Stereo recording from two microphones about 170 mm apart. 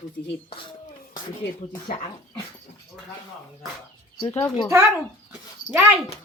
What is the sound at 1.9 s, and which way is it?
Speech, 30° left (ahead or behind).